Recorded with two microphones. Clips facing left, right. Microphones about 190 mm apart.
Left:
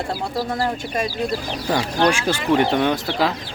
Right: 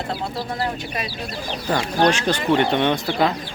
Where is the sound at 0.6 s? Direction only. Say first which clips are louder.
Left 3 dB; 45° left (ahead or behind).